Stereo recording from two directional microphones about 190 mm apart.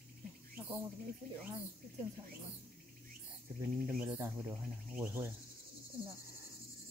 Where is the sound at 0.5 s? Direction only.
10° right (ahead or behind).